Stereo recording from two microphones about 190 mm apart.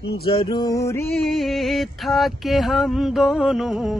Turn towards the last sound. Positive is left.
turn(degrees=0)  # may be behind; listen again after turning